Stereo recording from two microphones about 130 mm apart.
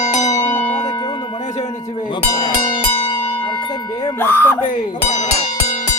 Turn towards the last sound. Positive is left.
turn(degrees=65)  # may be behind; listen again after turning